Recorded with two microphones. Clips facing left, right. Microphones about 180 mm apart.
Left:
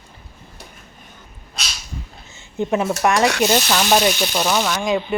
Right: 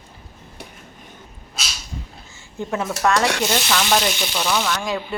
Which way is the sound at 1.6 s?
5° right (ahead or behind).